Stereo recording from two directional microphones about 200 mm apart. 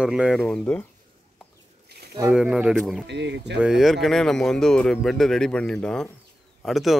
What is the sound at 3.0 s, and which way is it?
Speech, 60° right (ahead or behind).